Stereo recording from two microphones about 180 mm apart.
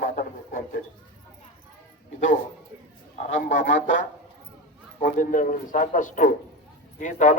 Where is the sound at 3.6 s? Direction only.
90° left.